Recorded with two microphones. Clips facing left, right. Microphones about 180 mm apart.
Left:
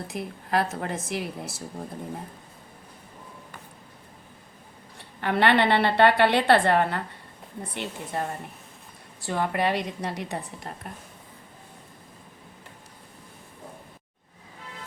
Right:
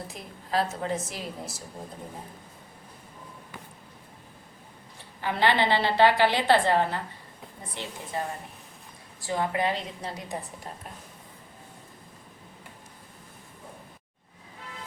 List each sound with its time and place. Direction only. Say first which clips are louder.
0.1 s a woman's voice: left 4 dB; 65° left (ahead or behind)
5.2 s a woman's voice: left 3 dB; 65° left (ahead or behind)
9.2 s a woman's voice: left 2 dB; 65° left (ahead or behind)